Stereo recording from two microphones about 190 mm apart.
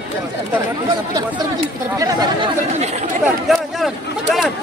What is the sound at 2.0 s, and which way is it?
Speech, 20° right (ahead or behind).